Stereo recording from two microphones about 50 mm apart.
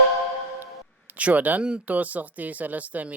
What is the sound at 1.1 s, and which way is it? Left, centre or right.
Speech, right.